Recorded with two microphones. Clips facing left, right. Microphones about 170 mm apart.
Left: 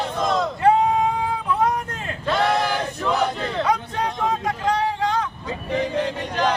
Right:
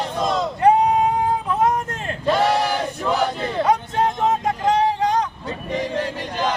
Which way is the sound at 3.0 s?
10° right (ahead or behind).